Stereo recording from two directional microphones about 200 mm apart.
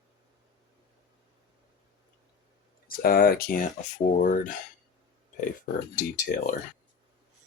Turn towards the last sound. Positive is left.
turn(degrees=40)  # may be behind; listen again after turning